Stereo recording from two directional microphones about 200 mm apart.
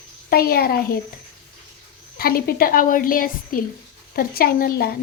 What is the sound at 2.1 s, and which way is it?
Speech, 50° left (ahead or behind).